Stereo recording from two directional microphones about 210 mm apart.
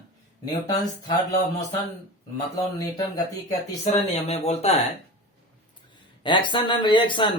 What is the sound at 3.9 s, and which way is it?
Speech, 30° left (ahead or behind).